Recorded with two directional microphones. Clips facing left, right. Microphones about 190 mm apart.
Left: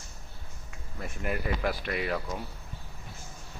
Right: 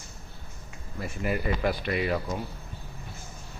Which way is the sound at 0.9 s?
Centre (ahead or behind).